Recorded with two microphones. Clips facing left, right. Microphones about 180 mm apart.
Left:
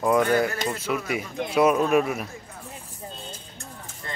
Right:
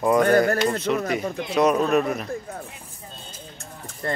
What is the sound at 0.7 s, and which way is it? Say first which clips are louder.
Speech: right 4 dB; 5° left (ahead or behind).